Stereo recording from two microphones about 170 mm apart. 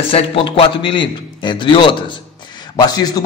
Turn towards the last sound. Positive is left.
turn(degrees=25)  # may be behind; listen again after turning